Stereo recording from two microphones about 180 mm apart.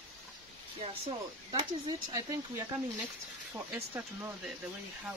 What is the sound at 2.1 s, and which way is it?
Speech, 20° right (ahead or behind).